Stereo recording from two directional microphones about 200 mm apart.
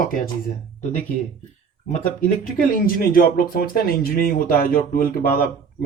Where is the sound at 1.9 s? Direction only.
40° left (ahead or behind).